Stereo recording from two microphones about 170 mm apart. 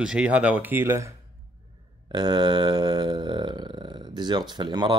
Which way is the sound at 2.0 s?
25° right (ahead or behind).